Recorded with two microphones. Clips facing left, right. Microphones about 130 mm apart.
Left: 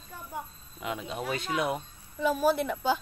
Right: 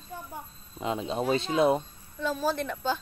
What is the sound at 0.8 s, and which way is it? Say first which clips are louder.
Speech: right 5 dB; 30° right (ahead or behind).